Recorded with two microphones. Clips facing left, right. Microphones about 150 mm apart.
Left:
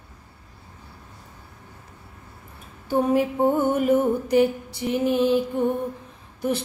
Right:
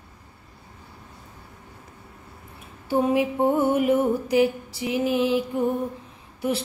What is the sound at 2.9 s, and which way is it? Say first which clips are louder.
Music: left 1 dB; 5° right (ahead or behind).